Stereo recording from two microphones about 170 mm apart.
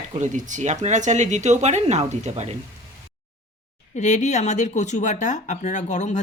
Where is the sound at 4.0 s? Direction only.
45° left (ahead or behind).